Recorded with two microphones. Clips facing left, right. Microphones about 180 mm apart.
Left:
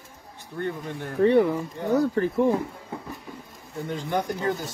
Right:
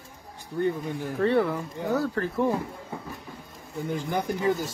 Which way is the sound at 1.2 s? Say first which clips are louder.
Left 5 dB; 15° left (ahead or behind).